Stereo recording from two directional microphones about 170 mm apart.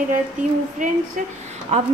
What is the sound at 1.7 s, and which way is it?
Speech, 45° right (ahead or behind).